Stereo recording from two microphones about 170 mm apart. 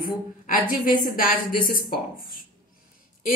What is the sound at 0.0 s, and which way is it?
Speech, 55° left (ahead or behind).